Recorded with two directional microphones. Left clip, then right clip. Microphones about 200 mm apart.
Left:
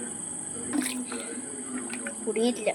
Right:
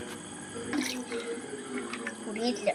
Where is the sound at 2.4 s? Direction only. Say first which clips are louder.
Left 3 dB; 55° left (ahead or behind).